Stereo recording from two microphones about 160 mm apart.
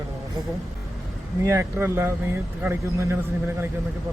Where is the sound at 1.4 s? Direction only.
15° right (ahead or behind).